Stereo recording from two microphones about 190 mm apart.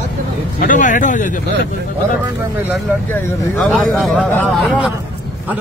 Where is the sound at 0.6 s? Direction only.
45° left (ahead or behind).